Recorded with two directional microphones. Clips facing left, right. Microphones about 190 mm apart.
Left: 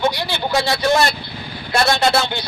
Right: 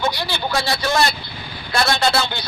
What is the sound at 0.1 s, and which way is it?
Speech, 20° left (ahead or behind).